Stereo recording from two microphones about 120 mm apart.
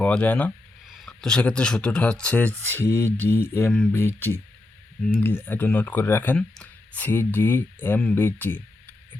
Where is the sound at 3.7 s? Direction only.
5° left (ahead or behind).